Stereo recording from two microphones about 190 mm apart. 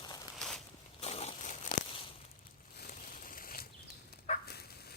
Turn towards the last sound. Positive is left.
turn(degrees=55)  # may be behind; listen again after turning